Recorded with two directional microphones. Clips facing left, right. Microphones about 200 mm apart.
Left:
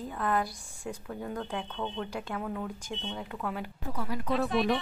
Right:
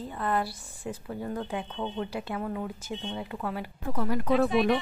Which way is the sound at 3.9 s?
50° right (ahead or behind).